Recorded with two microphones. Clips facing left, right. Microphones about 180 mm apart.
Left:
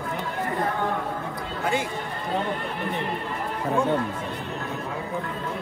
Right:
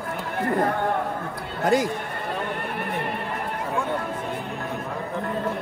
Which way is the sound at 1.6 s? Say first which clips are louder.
Right 6 dB; 40° right (ahead or behind).